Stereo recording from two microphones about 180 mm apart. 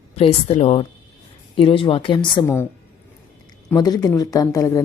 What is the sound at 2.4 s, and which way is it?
Speech, 15° left (ahead or behind).